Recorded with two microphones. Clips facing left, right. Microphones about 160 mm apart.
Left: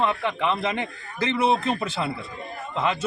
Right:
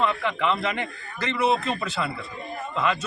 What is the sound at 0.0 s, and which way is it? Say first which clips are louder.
A man's voice: even; 25° left (ahead or behind).